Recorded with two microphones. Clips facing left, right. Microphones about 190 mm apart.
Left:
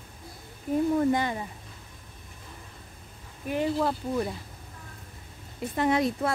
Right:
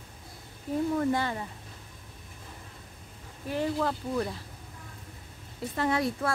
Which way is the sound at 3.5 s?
15° left (ahead or behind).